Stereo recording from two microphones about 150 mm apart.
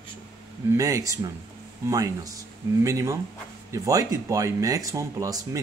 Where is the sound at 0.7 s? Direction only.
20° right (ahead or behind).